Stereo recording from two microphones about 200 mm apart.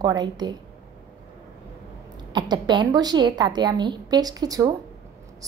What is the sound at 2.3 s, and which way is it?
A woman's voice, 20° right (ahead or behind).